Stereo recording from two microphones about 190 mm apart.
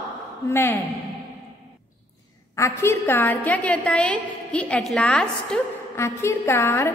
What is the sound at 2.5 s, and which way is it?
A woman's voice, 15° left (ahead or behind).